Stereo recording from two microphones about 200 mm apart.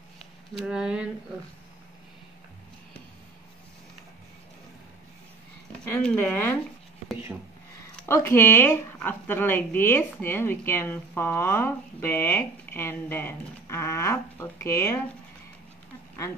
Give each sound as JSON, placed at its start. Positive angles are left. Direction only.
{"t": 0.6, "sound": "speech", "side_deg": -5}
{"t": 5.9, "sound": "speech", "side_deg": 10}
{"t": 8.1, "sound": "speech", "side_deg": 15}